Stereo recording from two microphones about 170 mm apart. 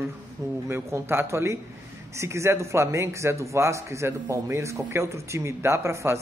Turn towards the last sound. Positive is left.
turn(degrees=-15)  # may be behind; listen again after turning